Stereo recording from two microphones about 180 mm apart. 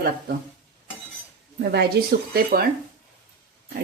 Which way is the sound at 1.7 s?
60° right (ahead or behind).